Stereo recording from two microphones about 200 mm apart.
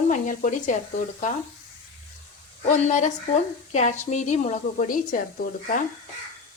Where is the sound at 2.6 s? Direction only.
35° left (ahead or behind).